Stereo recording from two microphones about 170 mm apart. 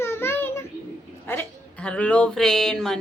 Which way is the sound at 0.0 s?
15° left (ahead or behind).